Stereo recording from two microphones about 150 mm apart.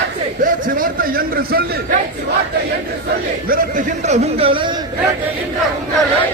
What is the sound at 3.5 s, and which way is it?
A man's voice, 55° right (ahead or behind).